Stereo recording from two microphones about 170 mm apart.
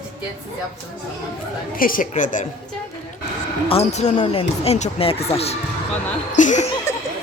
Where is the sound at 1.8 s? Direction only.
55° left (ahead or behind).